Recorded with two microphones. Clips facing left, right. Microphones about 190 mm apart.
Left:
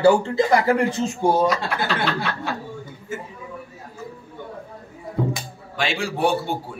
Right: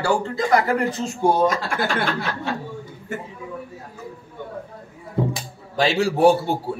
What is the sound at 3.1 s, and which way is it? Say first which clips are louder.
Speech: right 1 dB; 60° right (ahead or behind).